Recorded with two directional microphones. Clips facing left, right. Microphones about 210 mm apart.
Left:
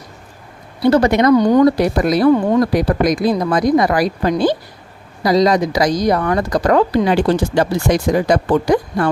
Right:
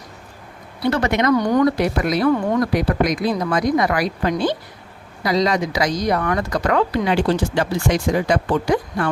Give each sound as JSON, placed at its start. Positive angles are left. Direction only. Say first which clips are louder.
{"t": 0.9, "sound": "speech", "louder": "left 6 dB", "side_deg": 35}